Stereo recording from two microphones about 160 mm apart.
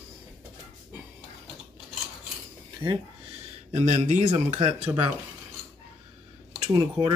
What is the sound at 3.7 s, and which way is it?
Speech, 45° right (ahead or behind).